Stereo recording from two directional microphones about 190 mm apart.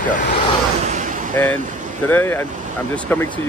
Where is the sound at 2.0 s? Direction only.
10° left (ahead or behind).